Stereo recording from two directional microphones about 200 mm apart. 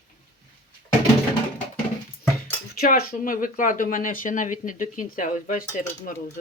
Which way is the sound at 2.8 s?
45° left (ahead or behind).